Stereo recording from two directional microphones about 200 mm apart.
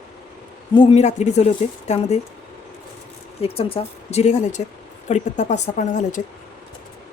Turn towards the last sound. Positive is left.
turn(degrees=40)  # may be behind; listen again after turning